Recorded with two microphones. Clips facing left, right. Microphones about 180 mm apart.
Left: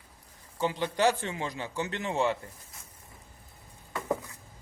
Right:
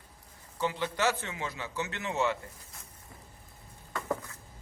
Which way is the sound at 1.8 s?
35° left (ahead or behind).